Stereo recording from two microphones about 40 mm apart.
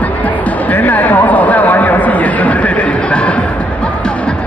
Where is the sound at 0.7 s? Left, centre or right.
Left.